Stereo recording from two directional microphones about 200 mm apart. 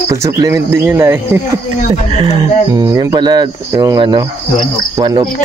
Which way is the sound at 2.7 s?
15° right (ahead or behind).